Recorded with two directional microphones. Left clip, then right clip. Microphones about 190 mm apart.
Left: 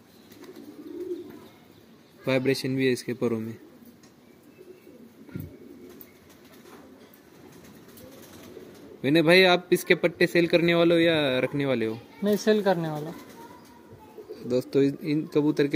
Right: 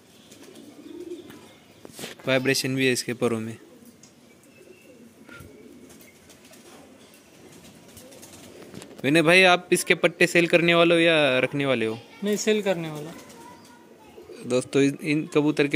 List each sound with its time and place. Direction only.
2.2 s a man's voice: centre (ahead or behind)
9.0 s a man's voice: centre (ahead or behind)
12.4 s speech: 35° left (ahead or behind)
14.5 s a man's voice: 5° right (ahead or behind)